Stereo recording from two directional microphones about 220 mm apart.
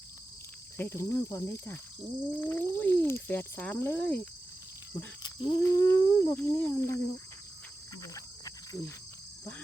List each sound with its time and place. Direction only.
0.8 s speech: 10° left (ahead or behind)
5.2 s speech: 20° left (ahead or behind)
8.0 s cricket: 15° left (ahead or behind)